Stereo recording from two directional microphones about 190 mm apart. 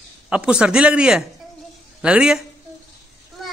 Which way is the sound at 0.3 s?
5° right (ahead or behind).